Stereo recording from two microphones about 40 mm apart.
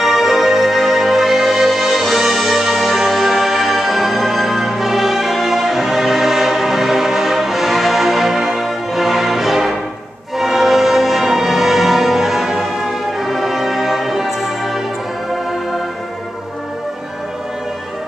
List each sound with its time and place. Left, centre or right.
0.0 s music: centre